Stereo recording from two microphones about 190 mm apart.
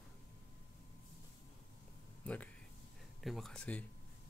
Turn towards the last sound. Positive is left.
turn(degrees=5)  # may be behind; listen again after turning